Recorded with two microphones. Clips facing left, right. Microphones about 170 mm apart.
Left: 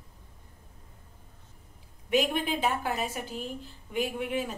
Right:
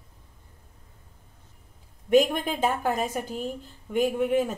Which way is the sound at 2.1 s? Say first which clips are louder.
Right 6 dB; 45° right (ahead or behind).